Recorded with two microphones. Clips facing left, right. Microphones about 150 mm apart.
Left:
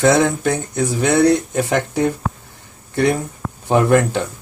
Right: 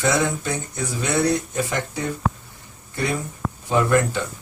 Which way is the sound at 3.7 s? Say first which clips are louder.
Left 5 dB; 70° left (ahead or behind).